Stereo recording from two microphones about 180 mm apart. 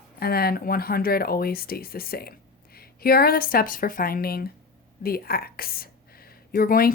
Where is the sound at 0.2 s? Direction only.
55° left (ahead or behind).